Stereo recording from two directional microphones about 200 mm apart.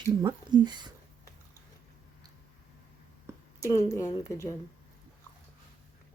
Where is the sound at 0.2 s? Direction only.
20° right (ahead or behind).